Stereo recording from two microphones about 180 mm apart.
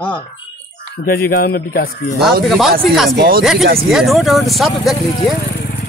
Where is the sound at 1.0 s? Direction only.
60° left (ahead or behind).